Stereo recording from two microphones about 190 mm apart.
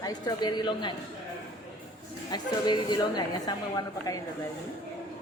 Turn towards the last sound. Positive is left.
turn(degrees=20)  # may be behind; listen again after turning